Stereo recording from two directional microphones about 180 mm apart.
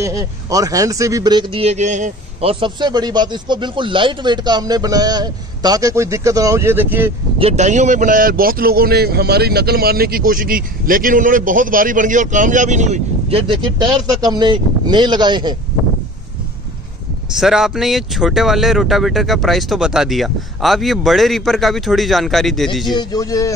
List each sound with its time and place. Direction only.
0.0 s speech: 20° right (ahead or behind); by 2.5 s 40° right (ahead or behind)
2.6 s speech: 25° right (ahead or behind)
7.3 s a man's voice: 35° right (ahead or behind)
17.4 s speech: centre (ahead or behind)
22.9 s speech: 20° left (ahead or behind)